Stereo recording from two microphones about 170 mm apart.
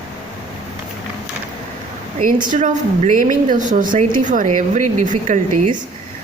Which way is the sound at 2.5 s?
45° right (ahead or behind).